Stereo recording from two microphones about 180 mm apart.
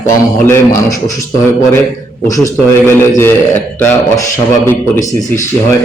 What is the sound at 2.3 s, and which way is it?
A man's voice, 15° left (ahead or behind).